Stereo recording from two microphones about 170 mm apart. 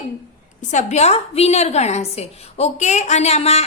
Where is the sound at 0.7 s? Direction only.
45° left (ahead or behind).